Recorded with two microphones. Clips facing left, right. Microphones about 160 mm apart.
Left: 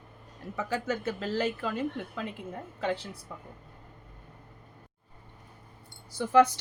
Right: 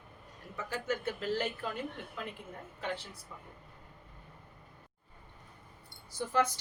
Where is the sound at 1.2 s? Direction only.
90° left.